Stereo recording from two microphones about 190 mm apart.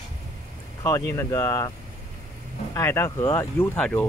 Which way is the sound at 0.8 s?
15° left (ahead or behind).